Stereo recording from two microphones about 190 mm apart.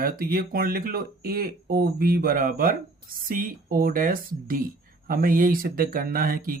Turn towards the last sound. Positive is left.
turn(degrees=-50)  # may be behind; listen again after turning